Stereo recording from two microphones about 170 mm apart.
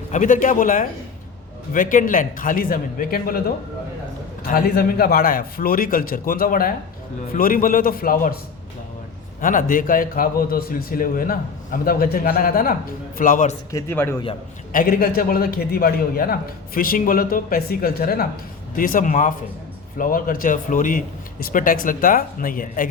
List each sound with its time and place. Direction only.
0.1 s a man's voice: 50° left (ahead or behind)
4.4 s a man's voice: 60° left (ahead or behind)
9.4 s a man's voice: 50° left (ahead or behind)
13.7 s speech: 15° left (ahead or behind)
14.7 s a man's voice: 55° left (ahead or behind)